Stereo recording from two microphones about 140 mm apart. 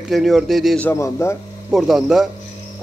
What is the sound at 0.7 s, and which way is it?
Speech, 15° left (ahead or behind).